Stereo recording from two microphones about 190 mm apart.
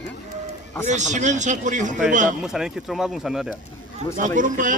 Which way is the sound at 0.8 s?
40° right (ahead or behind).